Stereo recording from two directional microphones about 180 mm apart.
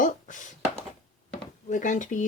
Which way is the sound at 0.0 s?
45° left (ahead or behind).